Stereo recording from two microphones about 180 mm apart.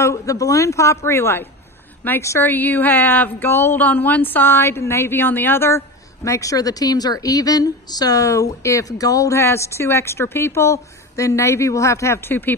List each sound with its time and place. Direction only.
0.0 s speech: 20° left (ahead or behind)